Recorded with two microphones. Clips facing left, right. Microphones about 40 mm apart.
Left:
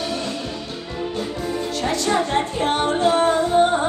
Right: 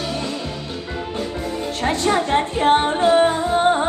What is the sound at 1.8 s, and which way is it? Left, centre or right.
Music, right.